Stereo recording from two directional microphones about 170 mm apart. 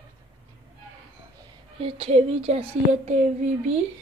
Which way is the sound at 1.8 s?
35° right (ahead or behind).